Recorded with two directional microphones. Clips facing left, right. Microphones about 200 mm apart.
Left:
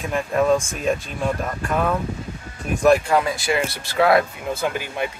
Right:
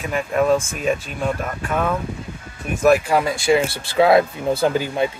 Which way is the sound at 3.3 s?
25° right (ahead or behind).